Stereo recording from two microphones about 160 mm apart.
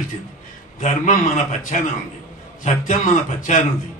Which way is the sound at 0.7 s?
50° left (ahead or behind).